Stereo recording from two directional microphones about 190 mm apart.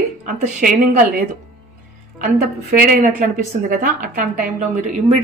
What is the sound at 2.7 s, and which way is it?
A woman's voice, 50° right (ahead or behind).